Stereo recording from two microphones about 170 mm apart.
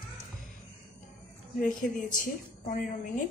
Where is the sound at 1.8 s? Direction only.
50° left (ahead or behind).